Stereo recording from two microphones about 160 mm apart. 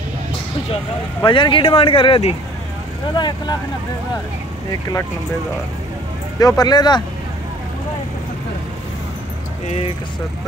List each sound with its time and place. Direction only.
1.2 s speech: 30° left (ahead or behind)
6.4 s speech: 25° left (ahead or behind)
9.7 s speech: 40° left (ahead or behind)